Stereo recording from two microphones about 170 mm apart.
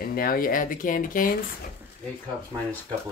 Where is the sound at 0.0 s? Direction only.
60° left (ahead or behind).